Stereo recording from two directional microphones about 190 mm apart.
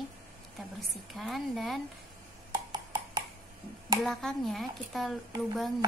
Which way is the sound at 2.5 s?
20° right (ahead or behind).